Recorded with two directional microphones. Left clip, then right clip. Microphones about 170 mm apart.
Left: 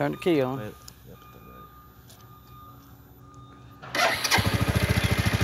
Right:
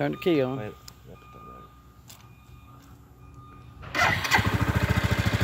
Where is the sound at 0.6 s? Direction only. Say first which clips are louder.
Right 1 dB; 15° right (ahead or behind).